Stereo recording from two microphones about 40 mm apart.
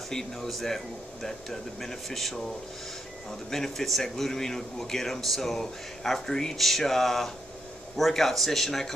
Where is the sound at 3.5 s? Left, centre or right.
Centre.